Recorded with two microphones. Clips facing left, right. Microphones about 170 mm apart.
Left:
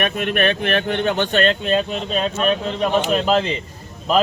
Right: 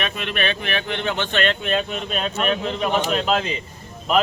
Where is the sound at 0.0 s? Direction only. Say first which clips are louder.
Left 6 dB; 50° left (ahead or behind); by 1.8 s 35° left (ahead or behind).